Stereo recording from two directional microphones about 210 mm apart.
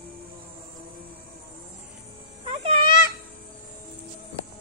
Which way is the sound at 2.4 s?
30° right (ahead or behind).